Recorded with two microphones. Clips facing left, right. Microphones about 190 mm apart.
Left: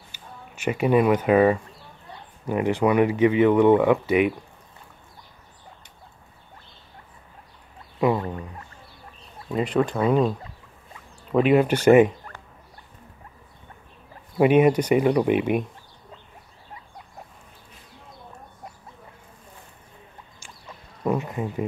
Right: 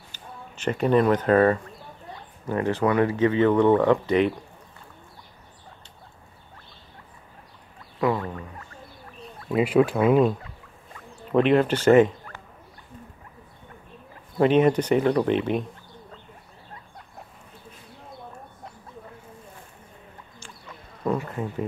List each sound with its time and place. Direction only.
0.1 s speech: 10° left (ahead or behind)
8.0 s a sound: 20° left (ahead or behind)
9.5 s speech: 5° right (ahead or behind)
11.3 s speech: 5° left (ahead or behind)
14.4 s speech: 10° left (ahead or behind)
21.0 s a sound: 10° left (ahead or behind)